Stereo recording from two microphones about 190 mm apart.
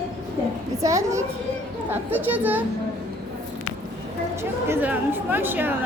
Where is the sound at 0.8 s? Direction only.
15° right (ahead or behind).